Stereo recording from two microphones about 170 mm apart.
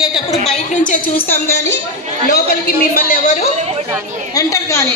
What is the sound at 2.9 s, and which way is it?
Speech, 45° left (ahead or behind).